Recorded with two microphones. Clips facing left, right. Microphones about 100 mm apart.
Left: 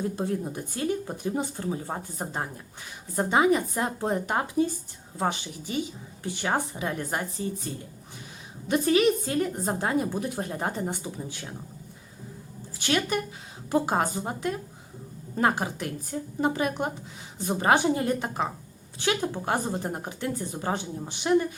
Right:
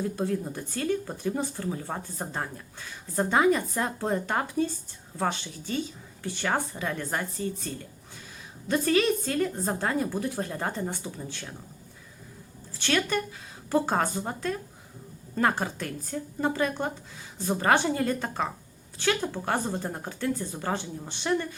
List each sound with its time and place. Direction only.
0.0 s speech: 20° left (ahead or behind)
8.7 s speech: 15° left (ahead or behind)
12.8 s speech: 15° left (ahead or behind)